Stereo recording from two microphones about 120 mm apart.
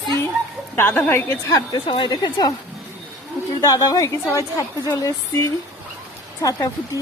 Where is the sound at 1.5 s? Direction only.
35° left (ahead or behind).